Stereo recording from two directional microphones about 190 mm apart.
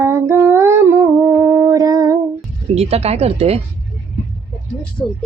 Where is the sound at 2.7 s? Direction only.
30° right (ahead or behind).